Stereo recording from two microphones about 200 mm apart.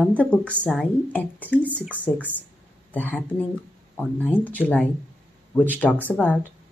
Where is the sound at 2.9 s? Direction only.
10° left (ahead or behind).